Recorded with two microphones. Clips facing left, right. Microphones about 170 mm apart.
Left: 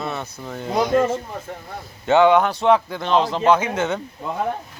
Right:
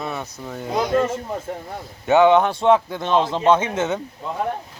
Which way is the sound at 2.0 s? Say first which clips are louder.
Even; 15° right (ahead or behind).